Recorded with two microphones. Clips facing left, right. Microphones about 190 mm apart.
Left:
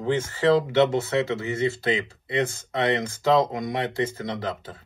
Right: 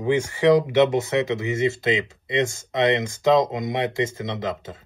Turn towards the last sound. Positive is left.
turn(degrees=-20)  # may be behind; listen again after turning